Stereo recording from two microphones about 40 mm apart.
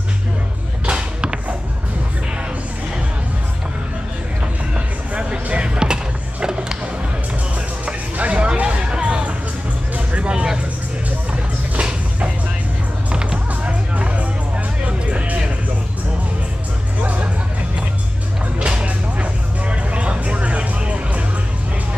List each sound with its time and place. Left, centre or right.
0.8 s a sound: right
4.7 s a sound: right
7.8 s music: right
9.9 s vehicle: right
13.1 s music: right
13.9 s music: right
19.7 s vehicle: right